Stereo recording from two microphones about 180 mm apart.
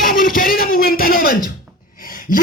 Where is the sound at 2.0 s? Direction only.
50° left (ahead or behind).